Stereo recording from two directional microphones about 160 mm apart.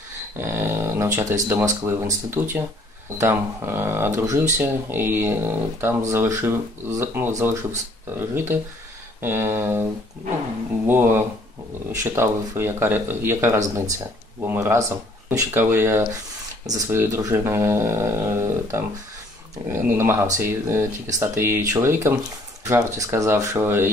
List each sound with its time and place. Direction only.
0.4 s speech: 15° right (ahead or behind)
10.9 s speech: 15° right (ahead or behind)